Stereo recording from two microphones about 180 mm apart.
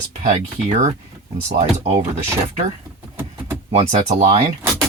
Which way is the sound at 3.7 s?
35° right (ahead or behind).